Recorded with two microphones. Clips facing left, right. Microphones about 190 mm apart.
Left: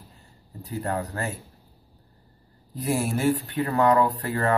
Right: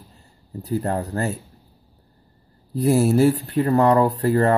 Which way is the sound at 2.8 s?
35° right (ahead or behind).